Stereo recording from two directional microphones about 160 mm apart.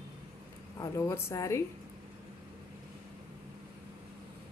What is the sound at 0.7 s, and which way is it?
Speech, 15° left (ahead or behind).